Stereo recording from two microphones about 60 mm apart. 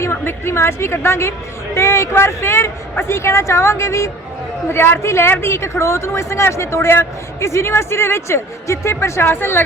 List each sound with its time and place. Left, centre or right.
0.0 s speech: left